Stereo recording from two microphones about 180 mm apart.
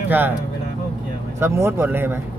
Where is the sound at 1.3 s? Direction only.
15° right (ahead or behind).